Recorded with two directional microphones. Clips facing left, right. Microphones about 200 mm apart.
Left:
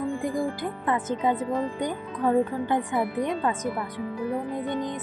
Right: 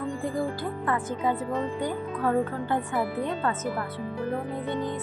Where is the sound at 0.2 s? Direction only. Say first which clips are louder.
Left 1 dB; 15° left (ahead or behind).